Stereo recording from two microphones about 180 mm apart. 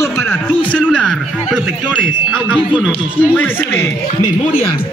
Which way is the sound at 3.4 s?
10° left (ahead or behind).